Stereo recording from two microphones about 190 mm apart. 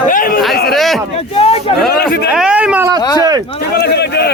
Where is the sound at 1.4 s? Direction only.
30° left (ahead or behind).